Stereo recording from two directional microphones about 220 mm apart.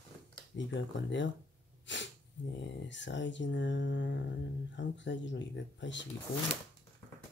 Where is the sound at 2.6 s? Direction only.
55° left (ahead or behind).